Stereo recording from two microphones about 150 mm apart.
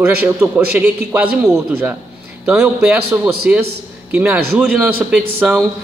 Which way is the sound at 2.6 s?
5° right (ahead or behind).